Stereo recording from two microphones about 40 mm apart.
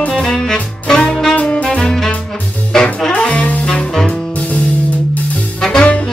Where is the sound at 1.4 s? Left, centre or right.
Left.